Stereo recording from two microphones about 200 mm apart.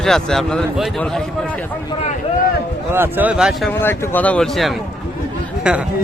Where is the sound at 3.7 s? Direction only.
10° left (ahead or behind).